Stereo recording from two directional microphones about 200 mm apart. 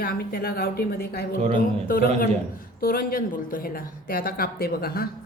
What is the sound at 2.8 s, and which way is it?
A woman's voice, 45° left (ahead or behind).